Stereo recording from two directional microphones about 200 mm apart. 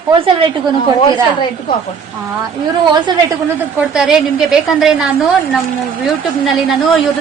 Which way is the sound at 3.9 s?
5° right (ahead or behind).